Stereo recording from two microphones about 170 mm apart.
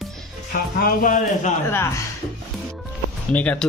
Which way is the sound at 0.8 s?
55° left (ahead or behind).